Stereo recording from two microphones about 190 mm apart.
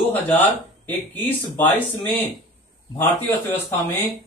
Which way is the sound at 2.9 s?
10° left (ahead or behind).